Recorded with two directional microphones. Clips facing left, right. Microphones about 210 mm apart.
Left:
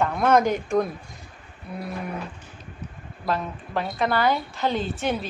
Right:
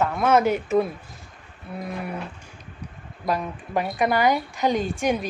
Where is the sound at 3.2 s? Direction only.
15° right (ahead or behind).